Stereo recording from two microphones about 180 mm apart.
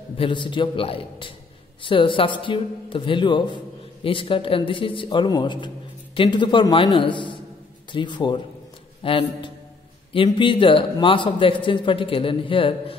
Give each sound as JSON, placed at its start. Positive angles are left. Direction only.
{"t": 0.2, "sound": "a man's voice", "side_deg": 25}